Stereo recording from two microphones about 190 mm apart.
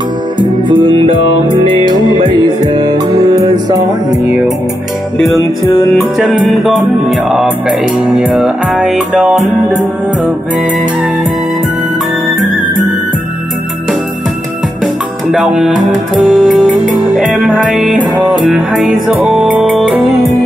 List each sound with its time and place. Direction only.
0.4 s music: 25° right (ahead or behind)
4.2 s music: centre (ahead or behind)
5.2 s music: 20° left (ahead or behind)
6.1 s music: centre (ahead or behind)
15.3 s music: 5° right (ahead or behind)